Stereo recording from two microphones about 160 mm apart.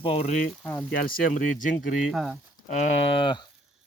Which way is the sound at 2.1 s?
Centre (ahead or behind).